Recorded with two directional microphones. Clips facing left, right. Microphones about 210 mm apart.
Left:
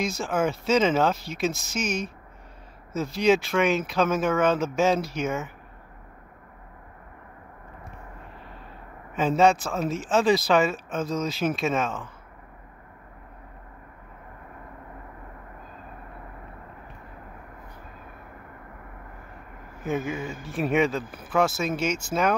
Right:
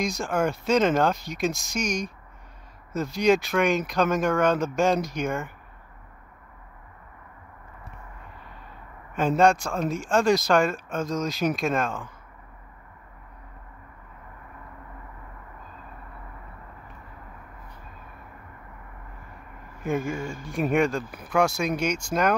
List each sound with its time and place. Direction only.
0.2 s speech: centre (ahead or behind)
9.1 s speech: 5° left (ahead or behind)
19.8 s speech: 5° left (ahead or behind)